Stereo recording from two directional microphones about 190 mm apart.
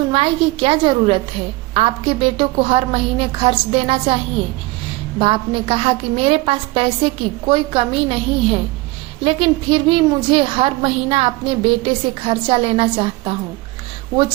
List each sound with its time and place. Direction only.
0.1 s a woman's voice: 30° right (ahead or behind)
5.2 s a woman's voice: 30° right (ahead or behind)